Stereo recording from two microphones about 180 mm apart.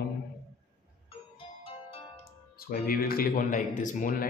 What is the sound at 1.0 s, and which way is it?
Music, 30° left (ahead or behind).